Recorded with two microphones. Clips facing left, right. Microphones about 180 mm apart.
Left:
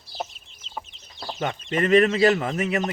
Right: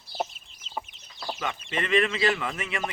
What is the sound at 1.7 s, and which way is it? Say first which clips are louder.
A man's voice: left 7 dB; 45° left (ahead or behind).